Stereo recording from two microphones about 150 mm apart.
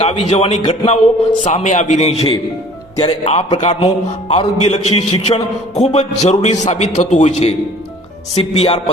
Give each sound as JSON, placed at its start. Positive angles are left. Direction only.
{"t": 0.0, "sound": "a man's voice", "side_deg": 45}
{"t": 3.0, "sound": "speech", "side_deg": 30}
{"t": 3.6, "sound": "a man's voice", "side_deg": 45}